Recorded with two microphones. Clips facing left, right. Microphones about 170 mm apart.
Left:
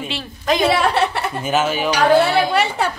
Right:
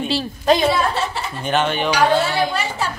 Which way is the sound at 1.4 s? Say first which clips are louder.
Even; 5° left (ahead or behind).